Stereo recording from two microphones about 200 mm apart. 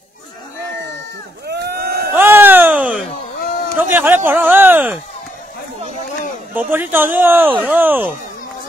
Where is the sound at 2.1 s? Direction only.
10° right (ahead or behind).